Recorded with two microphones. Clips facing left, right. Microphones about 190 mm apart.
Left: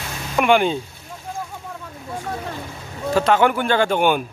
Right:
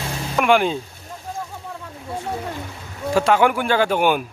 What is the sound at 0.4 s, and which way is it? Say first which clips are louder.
Speech: left 1 dB; centre (ahead or behind).